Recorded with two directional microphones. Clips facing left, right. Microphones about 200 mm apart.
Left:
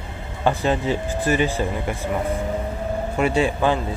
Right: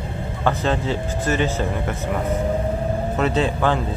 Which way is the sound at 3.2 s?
15° left (ahead or behind).